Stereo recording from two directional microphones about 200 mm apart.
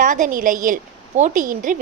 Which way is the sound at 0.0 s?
40° right (ahead or behind).